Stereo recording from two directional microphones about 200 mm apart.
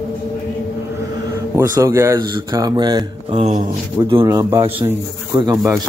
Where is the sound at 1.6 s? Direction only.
15° right (ahead or behind).